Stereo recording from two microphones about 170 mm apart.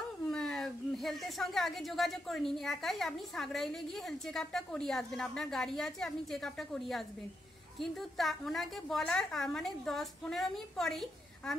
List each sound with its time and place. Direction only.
0.3 s speech: 5° left (ahead or behind)